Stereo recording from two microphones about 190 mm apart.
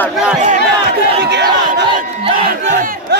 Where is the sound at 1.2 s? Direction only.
60° right (ahead or behind).